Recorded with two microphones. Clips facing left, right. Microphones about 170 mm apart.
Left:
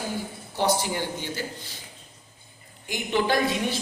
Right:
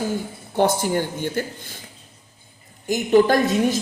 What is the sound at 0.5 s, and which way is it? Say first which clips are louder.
Speech: right 6 dB; 50° right (ahead or behind).